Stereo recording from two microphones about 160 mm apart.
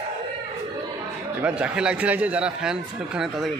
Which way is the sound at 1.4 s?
5° right (ahead or behind).